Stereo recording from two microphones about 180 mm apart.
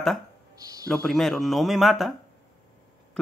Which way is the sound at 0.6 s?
20° right (ahead or behind).